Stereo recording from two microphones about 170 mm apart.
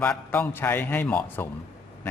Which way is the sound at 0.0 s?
10° left (ahead or behind).